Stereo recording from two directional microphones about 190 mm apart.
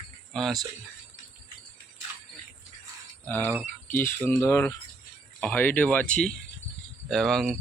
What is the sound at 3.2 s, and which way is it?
Speech, 10° left (ahead or behind).